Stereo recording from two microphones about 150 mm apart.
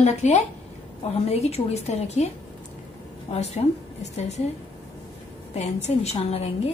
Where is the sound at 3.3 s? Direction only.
45° left (ahead or behind).